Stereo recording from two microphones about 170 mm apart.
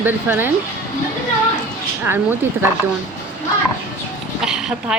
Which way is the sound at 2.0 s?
10° right (ahead or behind).